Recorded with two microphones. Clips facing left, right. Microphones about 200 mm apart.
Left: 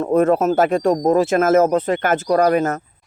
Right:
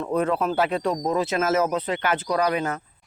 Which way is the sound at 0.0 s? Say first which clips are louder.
Left 8 dB; 45° left (ahead or behind).